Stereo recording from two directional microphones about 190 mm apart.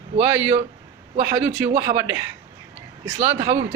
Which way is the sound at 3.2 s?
15° right (ahead or behind).